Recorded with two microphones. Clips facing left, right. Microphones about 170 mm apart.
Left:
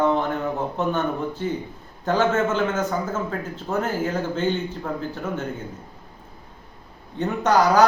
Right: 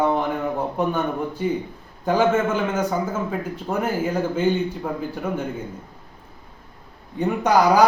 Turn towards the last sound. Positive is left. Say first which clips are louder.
# right 1 dB
turn(degrees=-10)  # may be behind; listen again after turning